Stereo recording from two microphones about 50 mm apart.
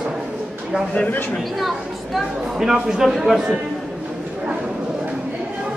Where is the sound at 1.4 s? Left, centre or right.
Centre.